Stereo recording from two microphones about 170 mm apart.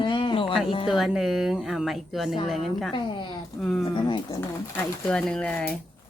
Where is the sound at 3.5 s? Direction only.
Centre (ahead or behind).